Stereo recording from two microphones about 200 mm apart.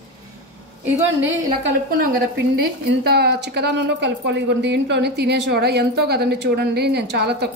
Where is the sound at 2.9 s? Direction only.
55° right (ahead or behind).